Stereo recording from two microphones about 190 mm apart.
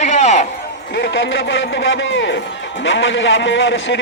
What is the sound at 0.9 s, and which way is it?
A man's voice, 70° left (ahead or behind).